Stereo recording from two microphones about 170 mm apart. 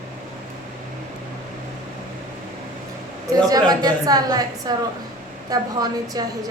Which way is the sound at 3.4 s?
20° right (ahead or behind).